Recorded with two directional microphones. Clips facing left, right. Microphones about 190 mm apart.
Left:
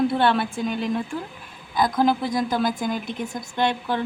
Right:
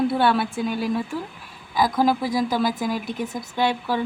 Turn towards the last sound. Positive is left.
turn(degrees=-5)  # may be behind; listen again after turning